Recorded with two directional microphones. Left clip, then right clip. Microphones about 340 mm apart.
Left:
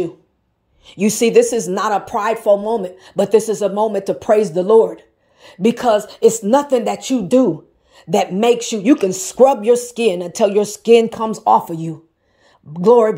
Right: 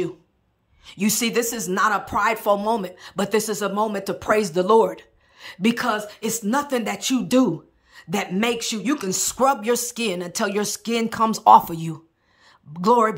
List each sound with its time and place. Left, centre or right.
0.8 s speech: centre
4.8 s gasp: centre
5.6 s speech: centre
7.2 s speech: right
7.9 s a sound: centre
8.4 s speech: centre
9.7 s speech: right
11.3 s speech: centre